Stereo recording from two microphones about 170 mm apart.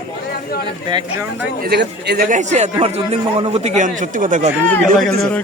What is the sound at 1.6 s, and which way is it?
Speech, 75° right (ahead or behind).